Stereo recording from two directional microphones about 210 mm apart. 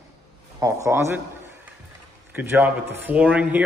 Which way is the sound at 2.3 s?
10° right (ahead or behind).